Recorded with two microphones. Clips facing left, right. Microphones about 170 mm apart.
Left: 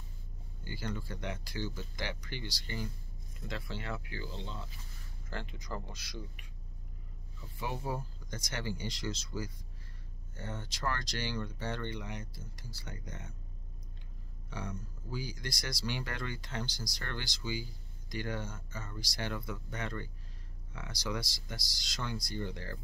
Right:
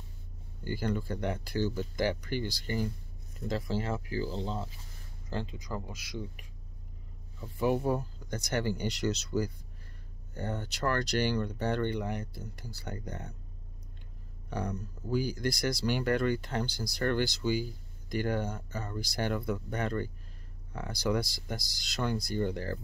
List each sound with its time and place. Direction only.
0.7 s speech: 55° right (ahead or behind); by 4.6 s 35° right (ahead or behind)
5.3 s speech: 20° right (ahead or behind)
7.5 s speech: 55° right (ahead or behind)
14.5 s speech: 40° right (ahead or behind)
15.0 s speech: 55° right (ahead or behind)
18.7 s speech: 40° right (ahead or behind)